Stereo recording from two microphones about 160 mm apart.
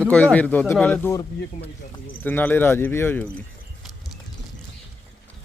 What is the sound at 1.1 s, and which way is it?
A man's voice, 20° left (ahead or behind).